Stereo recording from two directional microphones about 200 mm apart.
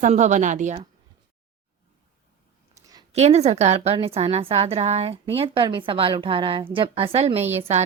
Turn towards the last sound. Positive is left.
turn(degrees=-30)  # may be behind; listen again after turning